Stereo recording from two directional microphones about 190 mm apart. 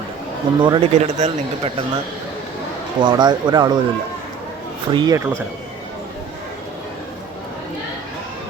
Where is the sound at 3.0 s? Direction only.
25° right (ahead or behind).